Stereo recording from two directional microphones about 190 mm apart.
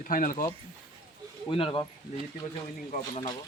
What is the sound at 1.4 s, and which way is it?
Speech, 30° left (ahead or behind).